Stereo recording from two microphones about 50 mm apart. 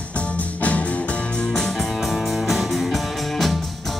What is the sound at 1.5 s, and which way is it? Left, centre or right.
Music, centre.